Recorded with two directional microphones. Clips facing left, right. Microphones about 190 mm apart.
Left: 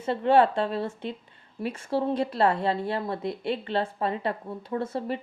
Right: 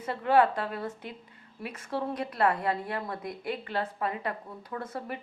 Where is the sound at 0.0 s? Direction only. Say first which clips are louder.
Left 3 dB; 30° left (ahead or behind).